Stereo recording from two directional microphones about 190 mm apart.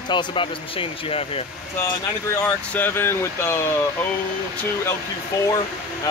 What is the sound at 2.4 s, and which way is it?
Speech, 10° left (ahead or behind).